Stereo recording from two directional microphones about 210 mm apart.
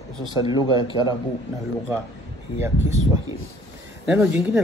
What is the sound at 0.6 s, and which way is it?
Speech, 20° right (ahead or behind).